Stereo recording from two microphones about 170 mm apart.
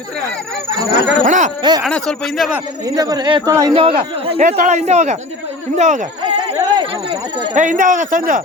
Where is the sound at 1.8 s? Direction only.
5° left (ahead or behind).